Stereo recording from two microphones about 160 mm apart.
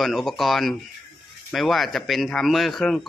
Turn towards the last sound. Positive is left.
turn(degrees=0)  # may be behind; listen again after turning